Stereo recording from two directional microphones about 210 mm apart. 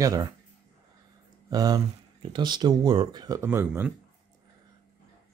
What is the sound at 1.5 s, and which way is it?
Speech, 20° right (ahead or behind).